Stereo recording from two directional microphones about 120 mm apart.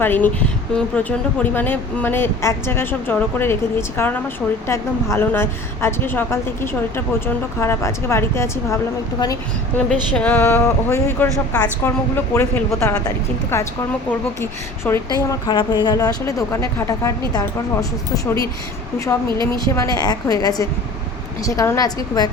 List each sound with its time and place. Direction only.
0.0 s a woman's voice: 15° left (ahead or behind)
9.7 s a woman's voice: 10° left (ahead or behind)
14.8 s speech: 15° left (ahead or behind)
15.3 s a woman's voice: 35° left (ahead or behind)
19.5 s a woman's voice: 30° left (ahead or behind)